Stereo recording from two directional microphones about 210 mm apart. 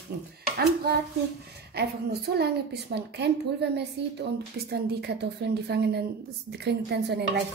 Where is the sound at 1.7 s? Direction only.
50° right (ahead or behind).